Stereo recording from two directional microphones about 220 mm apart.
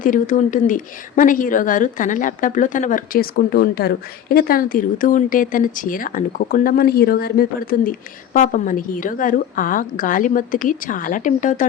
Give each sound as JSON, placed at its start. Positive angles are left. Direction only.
{"t": 0.0, "sound": "speech", "side_deg": 35}